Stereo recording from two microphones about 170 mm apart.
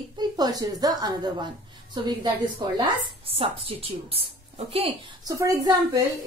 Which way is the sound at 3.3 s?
35° right (ahead or behind).